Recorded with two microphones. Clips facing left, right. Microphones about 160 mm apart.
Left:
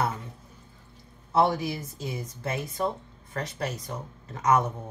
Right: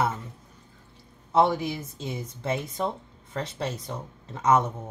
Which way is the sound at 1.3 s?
25° right (ahead or behind).